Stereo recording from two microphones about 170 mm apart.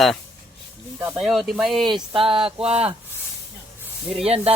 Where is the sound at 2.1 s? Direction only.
30° right (ahead or behind).